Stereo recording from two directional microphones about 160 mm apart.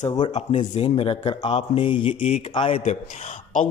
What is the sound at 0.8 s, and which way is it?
Speech, 35° left (ahead or behind).